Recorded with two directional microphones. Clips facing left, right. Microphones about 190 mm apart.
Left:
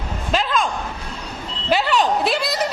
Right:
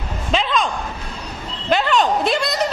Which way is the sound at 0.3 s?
5° left (ahead or behind).